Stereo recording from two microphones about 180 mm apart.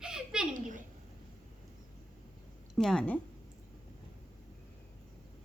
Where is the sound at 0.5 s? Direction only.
45° right (ahead or behind).